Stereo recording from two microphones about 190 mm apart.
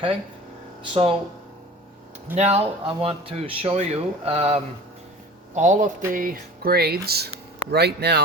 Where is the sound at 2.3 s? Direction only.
35° right (ahead or behind).